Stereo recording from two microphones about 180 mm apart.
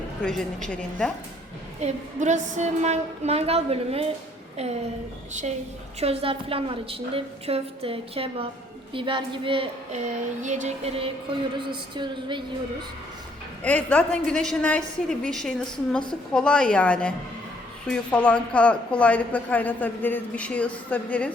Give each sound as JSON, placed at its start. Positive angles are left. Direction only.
{"t": 0.2, "sound": "a woman's voice", "side_deg": 0}
{"t": 1.8, "sound": "a woman's voice", "side_deg": -40}
{"t": 6.0, "sound": "a woman's voice", "side_deg": -35}
{"t": 10.4, "sound": "a woman's voice", "side_deg": -40}
{"t": 13.6, "sound": "a woman's voice", "side_deg": 10}